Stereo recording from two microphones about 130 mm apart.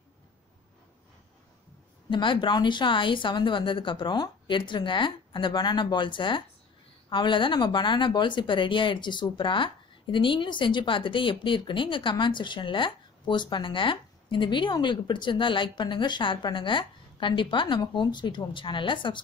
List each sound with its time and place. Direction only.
2.0 s speech: 40° left (ahead or behind)